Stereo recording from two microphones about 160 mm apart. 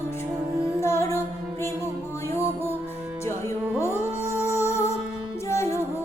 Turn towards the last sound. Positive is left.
turn(degrees=20)  # may be behind; listen again after turning